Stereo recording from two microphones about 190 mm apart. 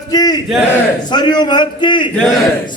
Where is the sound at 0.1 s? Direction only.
20° left (ahead or behind).